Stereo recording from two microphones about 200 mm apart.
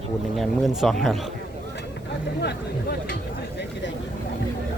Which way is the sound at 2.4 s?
50° left (ahead or behind).